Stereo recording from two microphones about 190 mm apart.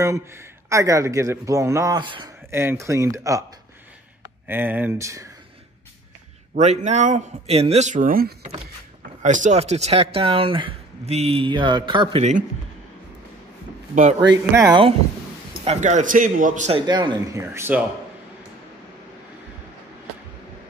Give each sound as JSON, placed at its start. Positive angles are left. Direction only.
{"t": 0.0, "sound": "speech", "side_deg": -15}
{"t": 2.5, "sound": "speech", "side_deg": -15}
{"t": 4.5, "sound": "speech", "side_deg": -10}
{"t": 6.5, "sound": "speech", "side_deg": -40}
{"t": 12.2, "sound": "speech", "side_deg": -35}
{"t": 14.3, "sound": "speech", "side_deg": -20}
{"t": 15.6, "sound": "speech", "side_deg": -35}
{"t": 16.8, "sound": "speech", "side_deg": -25}